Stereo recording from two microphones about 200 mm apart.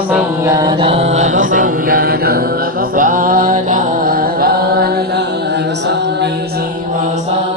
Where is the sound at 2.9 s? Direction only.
40° right (ahead or behind).